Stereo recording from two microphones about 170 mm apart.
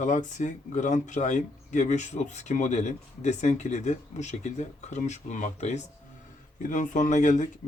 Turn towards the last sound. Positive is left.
turn(degrees=45)  # may be behind; listen again after turning